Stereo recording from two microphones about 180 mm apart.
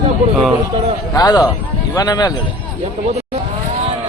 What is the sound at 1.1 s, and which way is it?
A man's voice, 20° left (ahead or behind).